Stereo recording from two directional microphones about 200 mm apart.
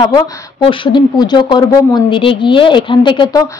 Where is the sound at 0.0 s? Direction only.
25° left (ahead or behind).